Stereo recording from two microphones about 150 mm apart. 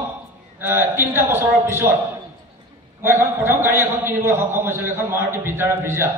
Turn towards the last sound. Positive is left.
turn(degrees=-15)  # may be behind; listen again after turning